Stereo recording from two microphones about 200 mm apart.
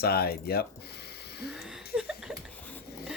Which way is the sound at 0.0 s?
50° left (ahead or behind).